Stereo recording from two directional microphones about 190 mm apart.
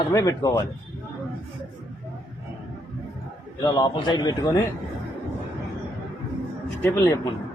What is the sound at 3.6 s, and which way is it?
Speech, 20° left (ahead or behind).